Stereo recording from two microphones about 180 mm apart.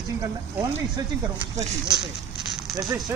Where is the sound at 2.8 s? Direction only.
20° right (ahead or behind).